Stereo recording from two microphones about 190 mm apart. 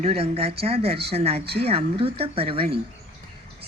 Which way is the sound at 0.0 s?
30° right (ahead or behind).